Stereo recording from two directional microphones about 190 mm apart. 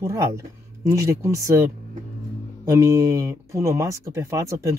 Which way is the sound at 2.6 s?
15° right (ahead or behind).